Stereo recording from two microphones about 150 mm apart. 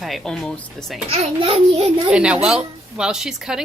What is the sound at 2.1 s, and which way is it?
A woman's voice, 5° right (ahead or behind).